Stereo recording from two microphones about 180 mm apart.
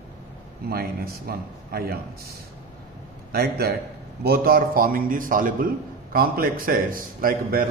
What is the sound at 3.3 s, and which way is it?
A man's voice, 60° right (ahead or behind).